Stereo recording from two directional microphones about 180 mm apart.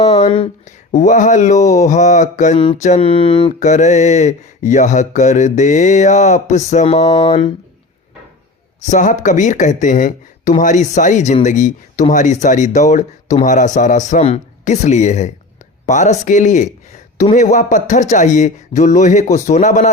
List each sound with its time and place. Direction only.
0.0 s speech: 35° left (ahead or behind)
2.8 s a sound: 35° left (ahead or behind)
3.6 s mantra: 40° left (ahead or behind)
8.9 s speech: 45° left (ahead or behind)